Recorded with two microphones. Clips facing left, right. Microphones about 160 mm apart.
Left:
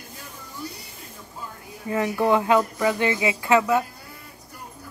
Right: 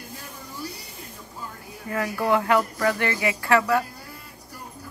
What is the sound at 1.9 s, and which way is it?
Speech, 20° left (ahead or behind).